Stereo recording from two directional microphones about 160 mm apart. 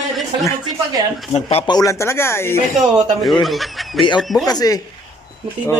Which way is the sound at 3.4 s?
Centre (ahead or behind).